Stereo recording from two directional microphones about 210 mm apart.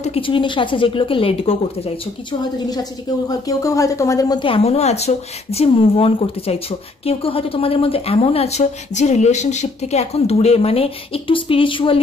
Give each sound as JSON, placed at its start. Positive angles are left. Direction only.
{"t": 0.0, "sound": "speech", "side_deg": 25}
{"t": 2.7, "sound": "speech", "side_deg": 20}